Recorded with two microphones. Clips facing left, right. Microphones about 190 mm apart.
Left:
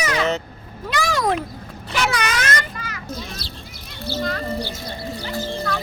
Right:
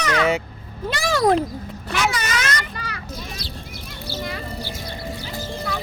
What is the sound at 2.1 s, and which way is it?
Vehicle, 60° left (ahead or behind).